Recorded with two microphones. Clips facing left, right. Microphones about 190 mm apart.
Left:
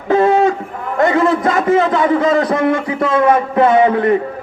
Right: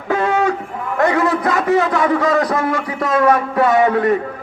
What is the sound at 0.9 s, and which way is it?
A man's voice, 20° left (ahead or behind).